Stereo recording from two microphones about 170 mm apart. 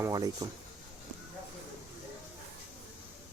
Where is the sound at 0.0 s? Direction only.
20° right (ahead or behind).